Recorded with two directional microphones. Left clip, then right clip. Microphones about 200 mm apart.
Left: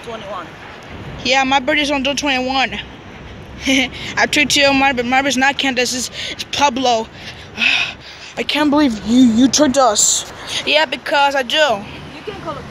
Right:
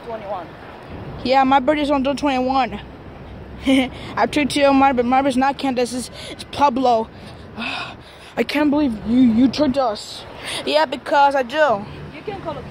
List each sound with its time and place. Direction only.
1.2 s speech: 20° right (ahead or behind)
8.4 s speech: 30° right (ahead or behind)
8.6 s speech: centre (ahead or behind)
10.6 s speech: 10° right (ahead or behind)